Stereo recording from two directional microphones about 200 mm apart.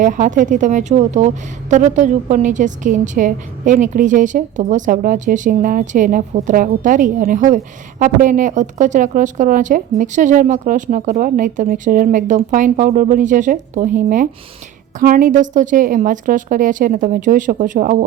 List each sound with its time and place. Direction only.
0.0 s a woman's voice: 40° right (ahead or behind)